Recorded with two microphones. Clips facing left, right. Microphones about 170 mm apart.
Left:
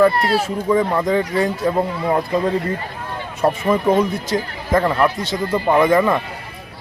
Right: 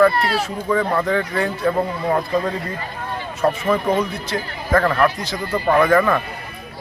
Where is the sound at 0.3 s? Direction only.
25° left (ahead or behind).